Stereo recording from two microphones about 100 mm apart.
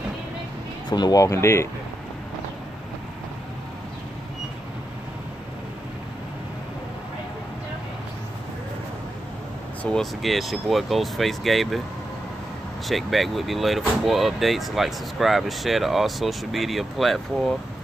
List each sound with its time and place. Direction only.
0.8 s speech: 45° left (ahead or behind); by 1.7 s 25° left (ahead or behind)
9.8 s speech: 5° left (ahead or behind)
12.8 s speech: centre (ahead or behind)